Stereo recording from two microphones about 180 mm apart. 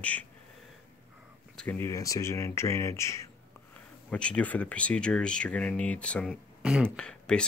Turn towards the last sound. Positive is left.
turn(degrees=5)  # may be behind; listen again after turning